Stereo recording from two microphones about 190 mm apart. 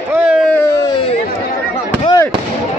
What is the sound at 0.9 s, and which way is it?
Chatter, 30° left (ahead or behind).